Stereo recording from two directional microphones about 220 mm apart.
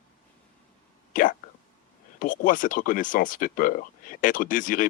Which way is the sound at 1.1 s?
40° left (ahead or behind).